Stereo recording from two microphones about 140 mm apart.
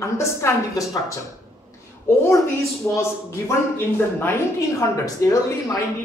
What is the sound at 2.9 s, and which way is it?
Speech, 20° left (ahead or behind).